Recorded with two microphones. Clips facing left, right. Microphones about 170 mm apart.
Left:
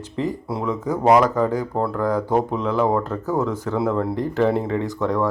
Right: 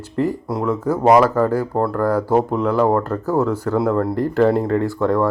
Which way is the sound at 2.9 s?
10° left (ahead or behind).